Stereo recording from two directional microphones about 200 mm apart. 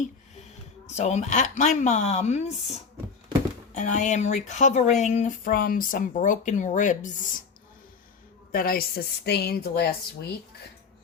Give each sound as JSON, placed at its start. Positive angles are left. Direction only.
{"t": 0.9, "sound": "speech", "side_deg": 35}
{"t": 3.8, "sound": "speech", "side_deg": 35}
{"t": 8.5, "sound": "a woman's voice", "side_deg": 45}